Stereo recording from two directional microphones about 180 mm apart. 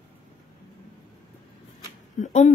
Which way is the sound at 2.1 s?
40° left (ahead or behind).